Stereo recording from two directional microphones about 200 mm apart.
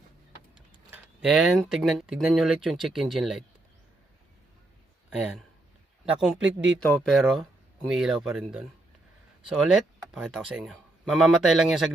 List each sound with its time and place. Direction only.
0.9 s speech: 5° right (ahead or behind)
6.1 s speech: 5° right (ahead or behind)
6.4 s speech: 70° right (ahead or behind)
6.7 s speech: 5° left (ahead or behind)